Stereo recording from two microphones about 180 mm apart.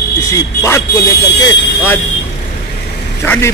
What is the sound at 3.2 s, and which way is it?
Speech, 10° left (ahead or behind).